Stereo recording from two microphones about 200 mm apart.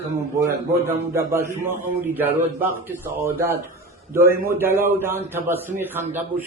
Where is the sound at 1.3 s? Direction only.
15° right (ahead or behind).